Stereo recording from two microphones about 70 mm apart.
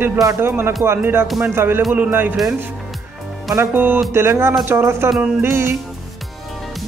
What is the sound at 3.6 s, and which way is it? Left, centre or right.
Speech, right.